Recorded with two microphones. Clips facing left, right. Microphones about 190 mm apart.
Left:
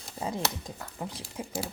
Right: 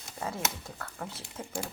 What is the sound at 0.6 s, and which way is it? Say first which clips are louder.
Speech: left 2 dB; 15° left (ahead or behind).